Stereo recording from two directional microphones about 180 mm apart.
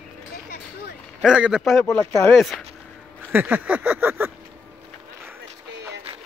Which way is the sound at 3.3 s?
10° right (ahead or behind).